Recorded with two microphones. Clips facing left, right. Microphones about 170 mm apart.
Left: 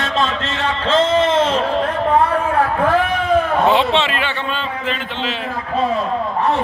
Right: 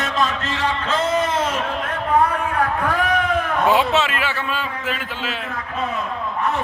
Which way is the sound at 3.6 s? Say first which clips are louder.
Left 2 dB; 5° right (ahead or behind).